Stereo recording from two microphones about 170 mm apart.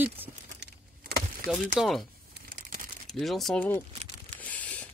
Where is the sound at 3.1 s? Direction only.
Centre (ahead or behind).